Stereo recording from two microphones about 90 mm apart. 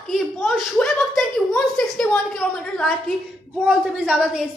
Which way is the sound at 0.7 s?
10° left (ahead or behind).